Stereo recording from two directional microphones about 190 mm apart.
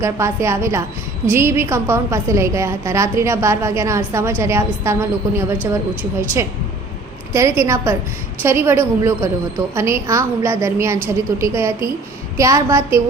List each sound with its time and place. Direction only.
0.0 s a woman's voice: 15° right (ahead or behind)
7.3 s a woman's voice: 15° right (ahead or behind)